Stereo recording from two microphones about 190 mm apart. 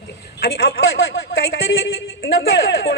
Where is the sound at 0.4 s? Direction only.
55° left (ahead or behind).